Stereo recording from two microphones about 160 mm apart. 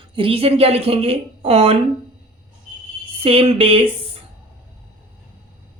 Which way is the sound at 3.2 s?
35° right (ahead or behind).